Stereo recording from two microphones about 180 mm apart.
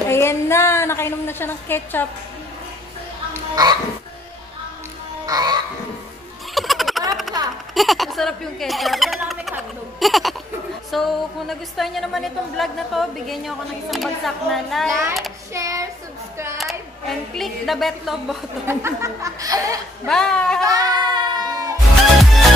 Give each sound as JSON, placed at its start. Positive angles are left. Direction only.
{"t": 0.1, "sound": "a sound", "side_deg": 15}
{"t": 5.2, "sound": "music", "side_deg": -20}
{"t": 6.5, "sound": "a sound", "side_deg": 0}
{"t": 7.3, "sound": "a sound", "side_deg": -20}
{"t": 7.7, "sound": "a woman's voice", "side_deg": 0}
{"t": 15.5, "sound": "speech", "side_deg": -15}
{"t": 16.5, "sound": "a woman's voice", "side_deg": 0}
{"t": 18.7, "sound": "speech", "side_deg": -15}
{"t": 20.1, "sound": "a woman's voice", "side_deg": 5}
{"t": 20.6, "sound": "child singing", "side_deg": -20}
{"t": 21.7, "sound": "music", "side_deg": 0}